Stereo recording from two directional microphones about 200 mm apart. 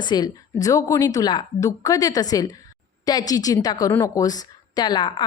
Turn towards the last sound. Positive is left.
turn(degrees=20)  # may be behind; listen again after turning